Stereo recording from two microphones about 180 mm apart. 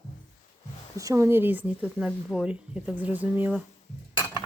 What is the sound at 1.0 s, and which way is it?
Speech, 20° right (ahead or behind).